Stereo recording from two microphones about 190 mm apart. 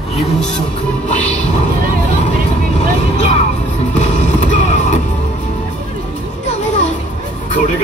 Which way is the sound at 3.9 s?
40° left (ahead or behind).